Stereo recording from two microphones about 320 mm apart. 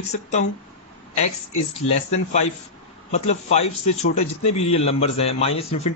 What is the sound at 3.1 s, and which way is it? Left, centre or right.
A man's voice, centre.